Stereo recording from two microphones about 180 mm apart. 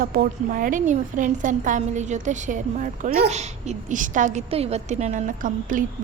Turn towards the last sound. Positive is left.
turn(degrees=-45)  # may be behind; listen again after turning